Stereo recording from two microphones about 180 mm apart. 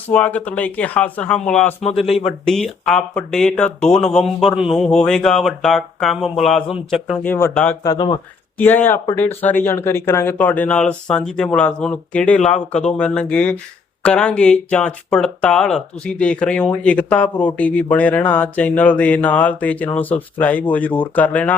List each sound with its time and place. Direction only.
0.1 s speech: 5° left (ahead or behind)
7.3 s speech: 15° left (ahead or behind)
7.9 s speech: 25° left (ahead or behind)
8.5 s speech: 10° left (ahead or behind)